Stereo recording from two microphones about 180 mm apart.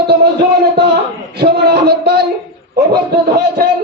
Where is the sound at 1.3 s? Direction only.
65° right (ahead or behind).